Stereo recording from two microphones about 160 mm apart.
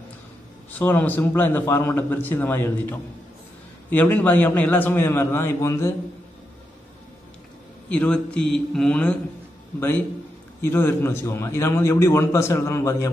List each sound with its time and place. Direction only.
0.7 s a man's voice: 10° left (ahead or behind)
7.9 s a man's voice: 10° left (ahead or behind)
10.6 s a man's voice: 15° left (ahead or behind)